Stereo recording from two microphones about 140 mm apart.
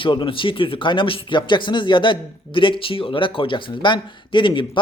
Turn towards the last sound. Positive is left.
turn(degrees=35)  # may be behind; listen again after turning